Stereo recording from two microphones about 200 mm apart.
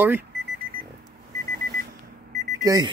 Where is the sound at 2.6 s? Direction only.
20° right (ahead or behind).